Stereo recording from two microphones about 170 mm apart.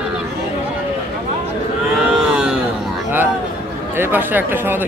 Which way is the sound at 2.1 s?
5° right (ahead or behind).